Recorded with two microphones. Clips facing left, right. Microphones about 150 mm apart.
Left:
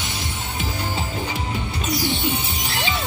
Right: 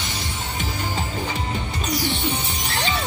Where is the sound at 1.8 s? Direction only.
45° right (ahead or behind).